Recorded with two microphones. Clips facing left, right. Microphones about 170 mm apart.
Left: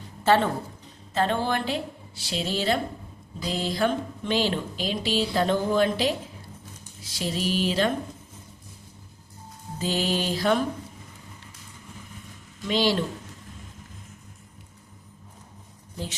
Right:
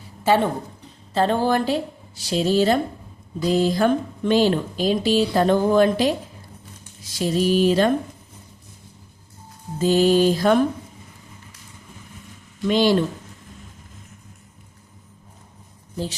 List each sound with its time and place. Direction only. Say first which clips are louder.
0.3 s a woman's voice: right 2 dB; 15° right (ahead or behind)
1.1 s a woman's voice: right 6 dB; 35° right (ahead or behind)
9.7 s speech: right 10 dB; 45° right (ahead or behind)
12.6 s speech: right 6 dB; 50° right (ahead or behind)